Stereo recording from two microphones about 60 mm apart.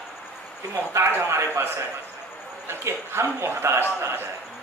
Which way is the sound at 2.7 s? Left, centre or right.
Right.